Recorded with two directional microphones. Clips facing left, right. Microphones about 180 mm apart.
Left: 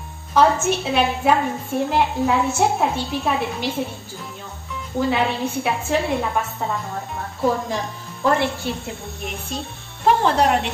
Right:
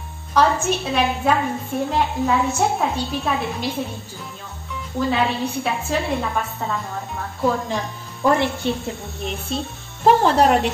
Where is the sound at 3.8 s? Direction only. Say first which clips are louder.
Left 1 dB; centre (ahead or behind).